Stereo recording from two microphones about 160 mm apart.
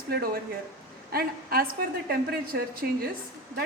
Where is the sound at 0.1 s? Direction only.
75° right (ahead or behind).